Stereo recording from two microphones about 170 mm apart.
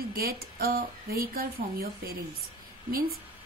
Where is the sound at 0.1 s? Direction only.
60° right (ahead or behind).